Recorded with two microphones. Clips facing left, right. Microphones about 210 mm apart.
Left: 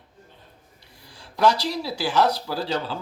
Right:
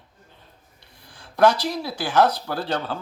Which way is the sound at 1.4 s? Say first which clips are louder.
Right 2 dB; 55° right (ahead or behind).